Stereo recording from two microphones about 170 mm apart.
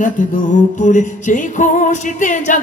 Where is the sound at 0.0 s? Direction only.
50° left (ahead or behind).